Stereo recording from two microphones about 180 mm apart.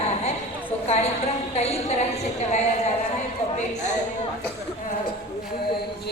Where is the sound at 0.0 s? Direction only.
35° left (ahead or behind).